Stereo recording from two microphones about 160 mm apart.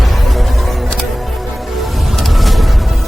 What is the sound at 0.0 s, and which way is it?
Music, centre (ahead or behind).